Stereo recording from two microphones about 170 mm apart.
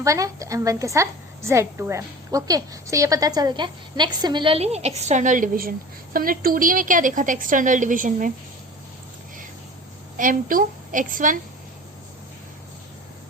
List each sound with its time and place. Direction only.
0.0 s a woman's voice: 20° right (ahead or behind); by 8.3 s 50° right (ahead or behind)
10.2 s a woman's voice: 50° right (ahead or behind)